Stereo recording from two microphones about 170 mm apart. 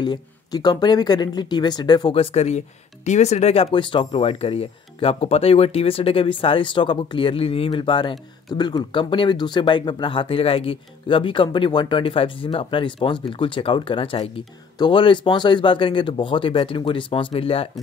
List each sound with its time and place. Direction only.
0.0 s speech: 25° left (ahead or behind)